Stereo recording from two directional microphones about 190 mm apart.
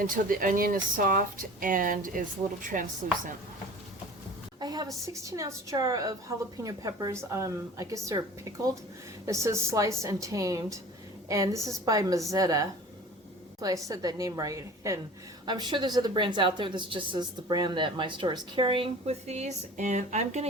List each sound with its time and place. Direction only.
0.0 s speech: 45° right (ahead or behind)
4.6 s a sound: 20° right (ahead or behind)
5.0 s a woman's voice: 15° right (ahead or behind); by 20.5 s 35° right (ahead or behind)